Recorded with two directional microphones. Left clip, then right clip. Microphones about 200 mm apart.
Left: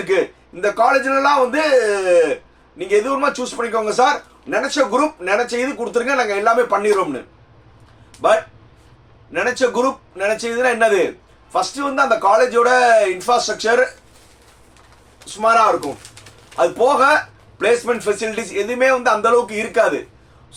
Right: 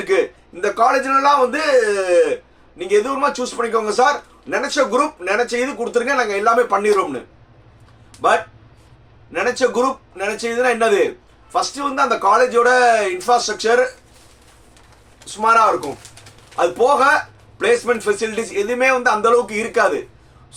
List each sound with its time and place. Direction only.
0.6 s a man's voice: 10° right (ahead or behind)
8.2 s a man's voice: 10° right (ahead or behind)
15.4 s a man's voice: 15° right (ahead or behind)